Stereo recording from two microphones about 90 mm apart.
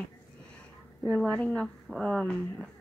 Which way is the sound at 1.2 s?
15° left (ahead or behind).